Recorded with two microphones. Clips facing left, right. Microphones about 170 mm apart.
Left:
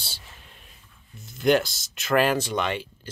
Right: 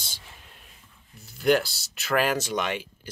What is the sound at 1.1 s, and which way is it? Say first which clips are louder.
Speech: left 1 dB; 5° right (ahead or behind).